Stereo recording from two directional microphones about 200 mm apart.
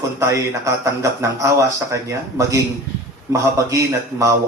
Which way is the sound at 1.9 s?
15° right (ahead or behind).